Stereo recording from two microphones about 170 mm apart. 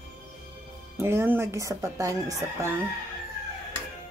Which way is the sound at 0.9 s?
15° right (ahead or behind).